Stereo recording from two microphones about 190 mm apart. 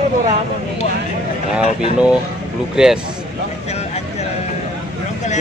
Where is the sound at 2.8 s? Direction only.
5° right (ahead or behind).